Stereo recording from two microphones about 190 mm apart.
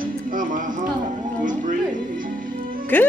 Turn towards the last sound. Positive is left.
turn(degrees=10)  # may be behind; listen again after turning